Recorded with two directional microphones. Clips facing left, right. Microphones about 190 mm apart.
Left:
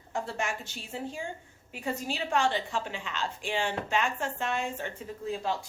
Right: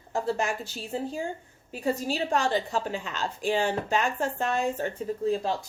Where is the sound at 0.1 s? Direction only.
35° right (ahead or behind).